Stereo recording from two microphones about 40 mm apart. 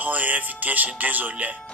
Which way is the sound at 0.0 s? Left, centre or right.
Right.